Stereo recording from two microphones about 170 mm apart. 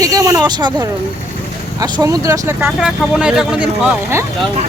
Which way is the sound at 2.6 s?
Centre (ahead or behind).